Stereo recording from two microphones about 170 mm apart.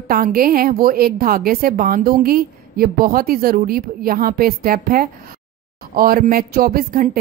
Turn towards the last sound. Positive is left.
turn(degrees=-60)  # may be behind; listen again after turning